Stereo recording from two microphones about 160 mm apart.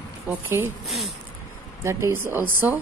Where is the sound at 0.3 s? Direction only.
15° right (ahead or behind).